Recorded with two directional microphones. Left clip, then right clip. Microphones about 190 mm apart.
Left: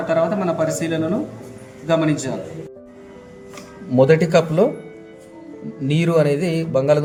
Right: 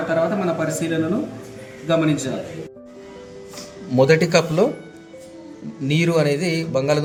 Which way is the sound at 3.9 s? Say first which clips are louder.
Left 1 dB; 15° left (ahead or behind).